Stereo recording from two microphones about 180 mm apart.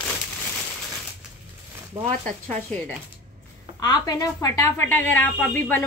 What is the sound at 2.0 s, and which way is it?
Speech, 35° right (ahead or behind).